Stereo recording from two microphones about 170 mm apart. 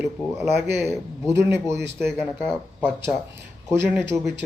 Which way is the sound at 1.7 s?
85° right.